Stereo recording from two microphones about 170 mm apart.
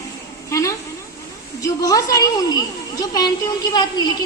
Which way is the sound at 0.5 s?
20° left (ahead or behind).